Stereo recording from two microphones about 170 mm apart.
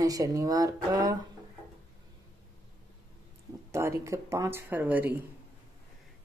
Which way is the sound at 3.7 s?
15° right (ahead or behind).